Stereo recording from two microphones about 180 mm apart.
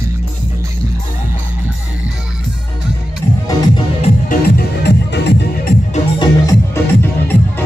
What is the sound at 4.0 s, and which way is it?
Music, 50° left (ahead or behind).